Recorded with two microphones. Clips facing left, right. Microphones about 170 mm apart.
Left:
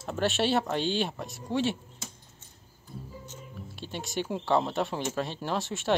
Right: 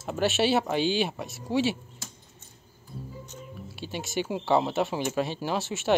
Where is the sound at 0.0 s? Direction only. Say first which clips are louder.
Right 2 dB; 5° right (ahead or behind).